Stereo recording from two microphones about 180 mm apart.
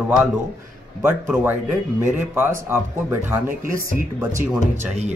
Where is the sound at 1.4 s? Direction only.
10° right (ahead or behind).